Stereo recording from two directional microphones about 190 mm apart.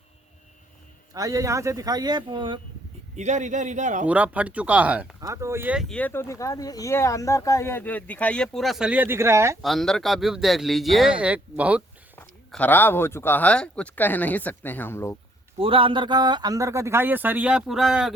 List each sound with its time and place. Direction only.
1.1 s speech: 20° right (ahead or behind)
3.2 s a man's voice: 40° right (ahead or behind)
4.0 s a man's voice: 5° right (ahead or behind)
9.6 s speech: centre (ahead or behind)
12.1 s speech: 10° left (ahead or behind)
15.5 s a man's voice: 30° right (ahead or behind); by 18.1 s centre (ahead or behind)